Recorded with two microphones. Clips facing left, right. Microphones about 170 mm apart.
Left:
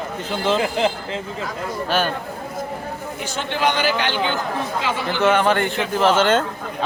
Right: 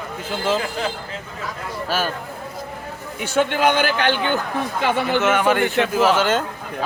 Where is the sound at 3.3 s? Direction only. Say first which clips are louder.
Right 5 dB; 50° right (ahead or behind).